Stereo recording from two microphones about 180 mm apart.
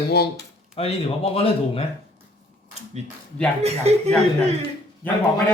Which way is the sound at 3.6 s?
35° right (ahead or behind).